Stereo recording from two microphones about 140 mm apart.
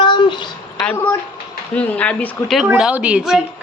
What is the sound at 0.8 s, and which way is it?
Speech, 10° left (ahead or behind).